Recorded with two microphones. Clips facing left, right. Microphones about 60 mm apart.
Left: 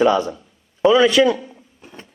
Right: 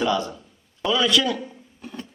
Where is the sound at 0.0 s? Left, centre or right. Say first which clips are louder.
Left 7 dB; left.